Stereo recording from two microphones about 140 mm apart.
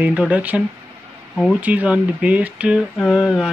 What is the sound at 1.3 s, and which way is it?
Speech, 5° left (ahead or behind).